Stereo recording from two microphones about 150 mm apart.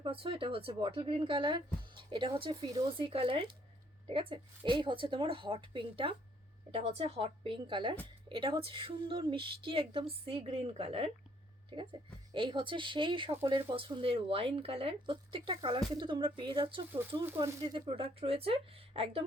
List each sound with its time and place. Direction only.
0.0 s speech: 35° right (ahead or behind)
16.9 s speech: 15° right (ahead or behind)
17.4 s speech: 25° right (ahead or behind)